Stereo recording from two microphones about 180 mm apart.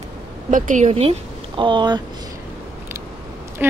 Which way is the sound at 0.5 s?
45° right (ahead or behind).